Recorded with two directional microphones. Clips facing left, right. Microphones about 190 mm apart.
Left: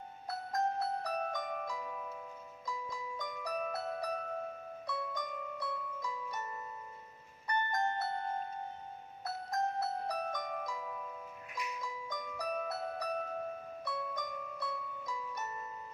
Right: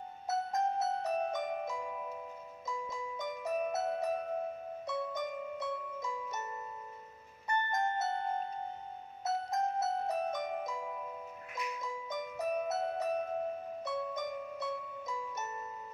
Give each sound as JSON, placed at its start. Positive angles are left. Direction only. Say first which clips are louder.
{"t": 0.3, "sound": "music", "louder": "right 3 dB", "side_deg": -20}
{"t": 7.4, "sound": "music", "louder": "right 1 dB", "side_deg": -20}
{"t": 9.2, "sound": "music", "louder": "right 3 dB", "side_deg": -20}